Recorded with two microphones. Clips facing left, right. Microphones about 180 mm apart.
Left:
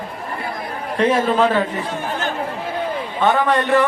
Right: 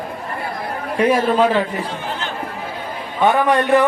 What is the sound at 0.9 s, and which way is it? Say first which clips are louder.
Speech: right 1 dB; 10° right (ahead or behind).